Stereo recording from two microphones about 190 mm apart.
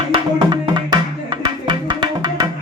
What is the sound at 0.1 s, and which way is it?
Music, 25° right (ahead or behind).